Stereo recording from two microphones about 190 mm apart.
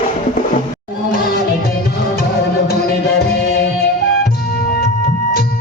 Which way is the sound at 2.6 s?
55° left (ahead or behind).